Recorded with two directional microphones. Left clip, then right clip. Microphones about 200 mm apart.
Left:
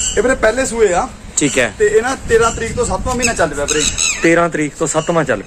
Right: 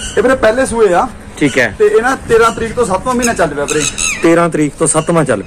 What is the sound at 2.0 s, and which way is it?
Speech, 5° left (ahead or behind).